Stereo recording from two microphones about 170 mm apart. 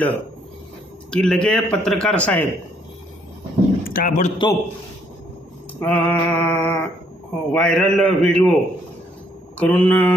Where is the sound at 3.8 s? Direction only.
50° left (ahead or behind).